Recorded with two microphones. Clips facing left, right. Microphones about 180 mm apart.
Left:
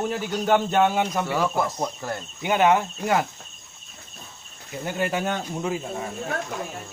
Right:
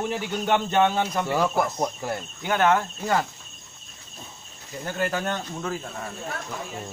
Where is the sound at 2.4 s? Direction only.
15° left (ahead or behind).